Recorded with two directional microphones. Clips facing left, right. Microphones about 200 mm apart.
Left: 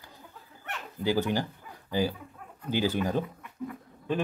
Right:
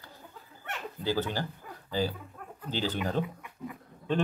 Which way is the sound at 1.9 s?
15° left (ahead or behind).